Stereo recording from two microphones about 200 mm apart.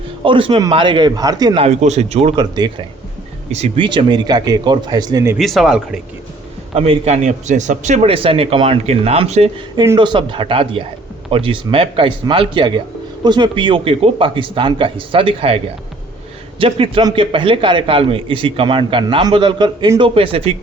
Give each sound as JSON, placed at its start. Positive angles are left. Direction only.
{"t": 0.3, "sound": "a man's voice", "side_deg": -25}
{"t": 5.4, "sound": "a man's voice", "side_deg": 0}
{"t": 6.7, "sound": "a man's voice", "side_deg": -30}
{"t": 9.8, "sound": "a man's voice", "side_deg": -20}